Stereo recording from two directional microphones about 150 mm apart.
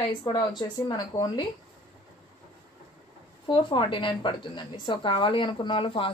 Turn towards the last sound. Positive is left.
turn(degrees=35)  # may be behind; listen again after turning